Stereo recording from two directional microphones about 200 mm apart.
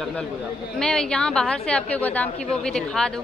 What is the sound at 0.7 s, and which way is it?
A woman's voice, 5° left (ahead or behind).